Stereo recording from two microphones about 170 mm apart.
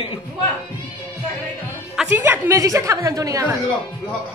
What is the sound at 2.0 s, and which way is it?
A woman's voice, 15° right (ahead or behind).